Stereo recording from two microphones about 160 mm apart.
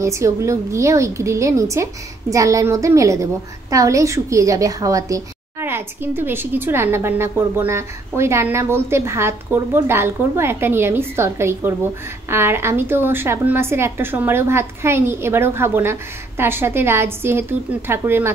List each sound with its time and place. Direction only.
0.0 s a woman's voice: 20° right (ahead or behind)